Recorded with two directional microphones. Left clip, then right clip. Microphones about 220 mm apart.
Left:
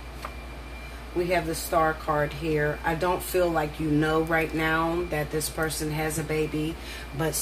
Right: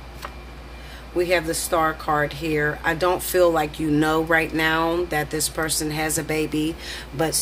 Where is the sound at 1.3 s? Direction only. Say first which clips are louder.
Right 3 dB; 45° right (ahead or behind).